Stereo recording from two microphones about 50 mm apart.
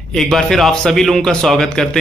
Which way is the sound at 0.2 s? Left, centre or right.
Centre.